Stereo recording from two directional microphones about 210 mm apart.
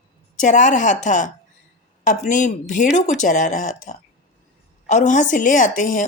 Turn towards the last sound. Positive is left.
turn(degrees=40)  # may be behind; listen again after turning